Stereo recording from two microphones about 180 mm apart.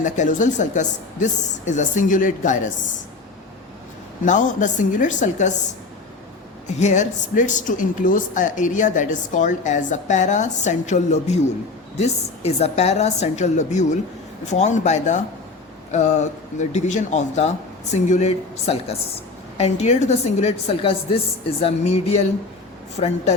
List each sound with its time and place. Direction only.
0.0 s speech: 45° left (ahead or behind)
4.2 s speech: 45° left (ahead or behind)
6.7 s a woman's voice: 40° left (ahead or behind)